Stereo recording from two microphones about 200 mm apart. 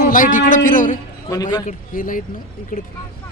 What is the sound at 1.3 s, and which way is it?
Speech, 20° left (ahead or behind).